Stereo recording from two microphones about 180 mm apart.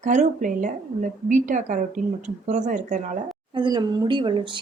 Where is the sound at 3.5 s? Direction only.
25° right (ahead or behind).